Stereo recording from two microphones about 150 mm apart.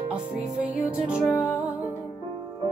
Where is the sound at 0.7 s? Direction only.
5° right (ahead or behind).